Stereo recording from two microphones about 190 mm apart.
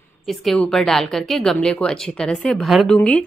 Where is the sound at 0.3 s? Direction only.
Centre (ahead or behind).